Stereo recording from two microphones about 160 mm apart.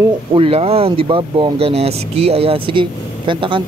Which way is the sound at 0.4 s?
40° right (ahead or behind).